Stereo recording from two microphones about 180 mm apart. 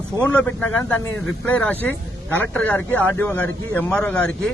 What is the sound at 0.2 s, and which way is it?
Speech, 5° left (ahead or behind).